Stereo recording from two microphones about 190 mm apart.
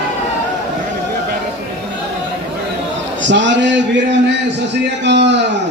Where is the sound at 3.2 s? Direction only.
70° right (ahead or behind).